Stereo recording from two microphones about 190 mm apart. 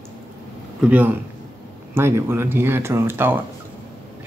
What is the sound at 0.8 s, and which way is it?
Speech, 10° right (ahead or behind).